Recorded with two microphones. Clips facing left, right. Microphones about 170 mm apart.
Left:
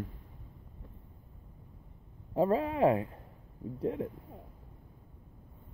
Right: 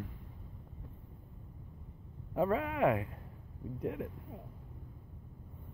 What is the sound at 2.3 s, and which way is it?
A man's voice, 30° left (ahead or behind).